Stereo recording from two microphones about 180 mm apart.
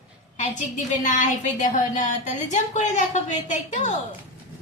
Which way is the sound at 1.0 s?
45° left (ahead or behind).